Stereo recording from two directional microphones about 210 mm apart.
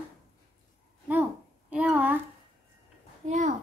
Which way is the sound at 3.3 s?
35° right (ahead or behind).